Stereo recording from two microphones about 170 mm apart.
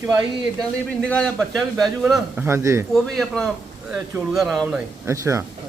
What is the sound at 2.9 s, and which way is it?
Speech, 5° left (ahead or behind).